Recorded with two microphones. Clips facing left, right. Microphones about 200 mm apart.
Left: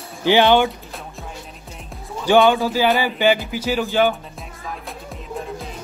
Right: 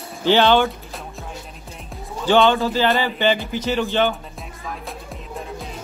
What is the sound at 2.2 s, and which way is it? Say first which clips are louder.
Speech: left 1 dB; 15° left (ahead or behind).